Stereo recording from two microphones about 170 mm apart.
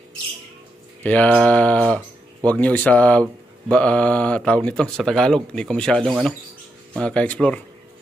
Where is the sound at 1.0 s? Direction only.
5° left (ahead or behind).